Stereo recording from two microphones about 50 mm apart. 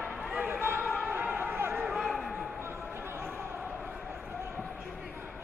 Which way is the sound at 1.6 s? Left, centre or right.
Right.